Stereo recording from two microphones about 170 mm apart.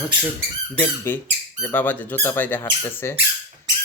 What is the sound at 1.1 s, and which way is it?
Speech, 15° left (ahead or behind).